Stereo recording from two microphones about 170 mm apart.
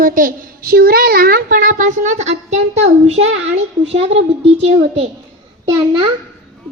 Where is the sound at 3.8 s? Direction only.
35° right (ahead or behind).